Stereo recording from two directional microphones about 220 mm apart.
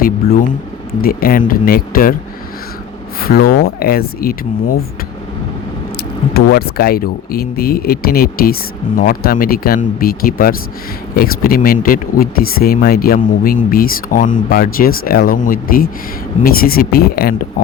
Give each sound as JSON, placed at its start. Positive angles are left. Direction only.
{"t": 0.0, "sound": "speech", "side_deg": 40}
{"t": 3.2, "sound": "speech", "side_deg": 40}
{"t": 6.3, "sound": "speech", "side_deg": 45}